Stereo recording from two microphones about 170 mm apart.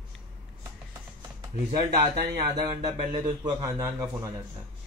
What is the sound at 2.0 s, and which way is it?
Speech, 20° right (ahead or behind).